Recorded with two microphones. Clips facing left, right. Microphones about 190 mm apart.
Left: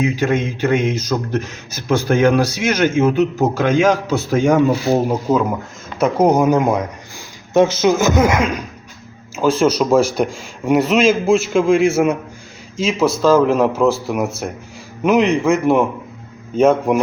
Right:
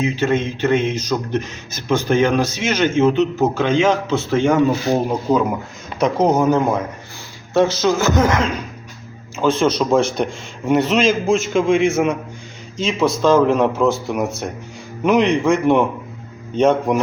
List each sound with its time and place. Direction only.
0.0 s speech: 10° left (ahead or behind)